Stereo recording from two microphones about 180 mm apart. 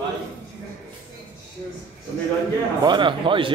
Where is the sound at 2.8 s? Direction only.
25° right (ahead or behind).